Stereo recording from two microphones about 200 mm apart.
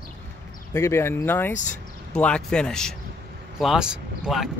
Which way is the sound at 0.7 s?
15° left (ahead or behind).